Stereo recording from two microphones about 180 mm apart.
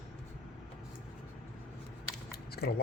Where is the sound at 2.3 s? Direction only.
60° left (ahead or behind).